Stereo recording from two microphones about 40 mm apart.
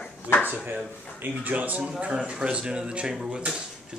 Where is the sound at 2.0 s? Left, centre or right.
Right.